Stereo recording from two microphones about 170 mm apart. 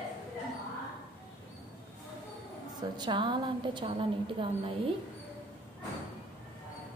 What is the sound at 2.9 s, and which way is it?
A woman's voice, 25° right (ahead or behind).